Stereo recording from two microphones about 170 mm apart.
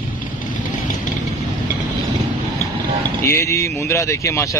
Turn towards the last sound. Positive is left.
turn(degrees=15)  # may be behind; listen again after turning